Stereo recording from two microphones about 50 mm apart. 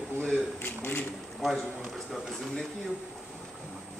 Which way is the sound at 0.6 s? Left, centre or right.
Left.